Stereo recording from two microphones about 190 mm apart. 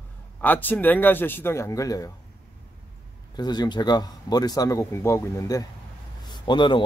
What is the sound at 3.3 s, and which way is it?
Speech, 20° left (ahead or behind).